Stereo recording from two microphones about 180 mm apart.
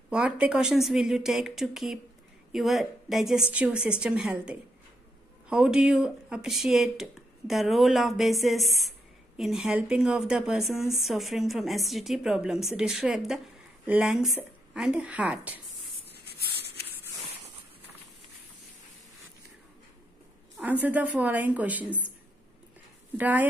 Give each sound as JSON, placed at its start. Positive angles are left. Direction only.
{"t": 0.1, "sound": "a woman's voice", "side_deg": -5}
{"t": 16.3, "sound": "a sound", "side_deg": 65}
{"t": 20.8, "sound": "a woman's voice", "side_deg": -10}
{"t": 23.1, "sound": "a woman's voice", "side_deg": -10}